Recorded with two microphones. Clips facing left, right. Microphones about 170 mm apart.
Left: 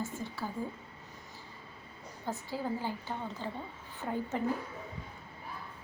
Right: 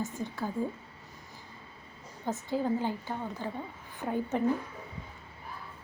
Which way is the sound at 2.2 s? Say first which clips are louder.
Right 5 dB; 20° right (ahead or behind).